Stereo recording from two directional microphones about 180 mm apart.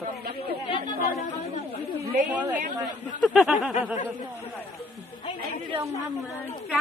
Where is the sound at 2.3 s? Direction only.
10° right (ahead or behind).